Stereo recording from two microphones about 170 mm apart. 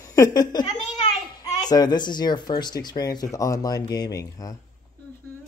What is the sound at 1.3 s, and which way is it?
Speech, 20° left (ahead or behind).